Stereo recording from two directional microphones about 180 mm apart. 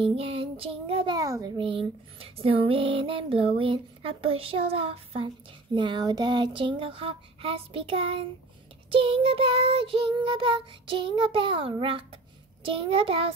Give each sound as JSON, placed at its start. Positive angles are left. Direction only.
{"t": 0.0, "sound": "child singing", "side_deg": -30}
{"t": 1.6, "sound": "a sound", "side_deg": -30}
{"t": 5.8, "sound": "child singing", "side_deg": -25}